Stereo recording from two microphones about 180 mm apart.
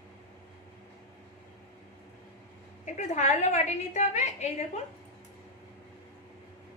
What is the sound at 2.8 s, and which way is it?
A woman's voice, 40° left (ahead or behind).